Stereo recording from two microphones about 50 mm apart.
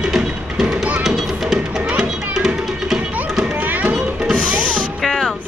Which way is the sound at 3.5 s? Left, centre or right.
Right.